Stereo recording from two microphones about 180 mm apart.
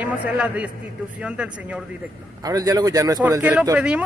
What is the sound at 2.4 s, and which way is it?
Speech, 20° right (ahead or behind).